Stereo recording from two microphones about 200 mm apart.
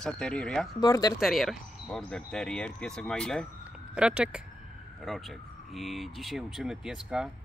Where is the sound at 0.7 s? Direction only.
20° left (ahead or behind).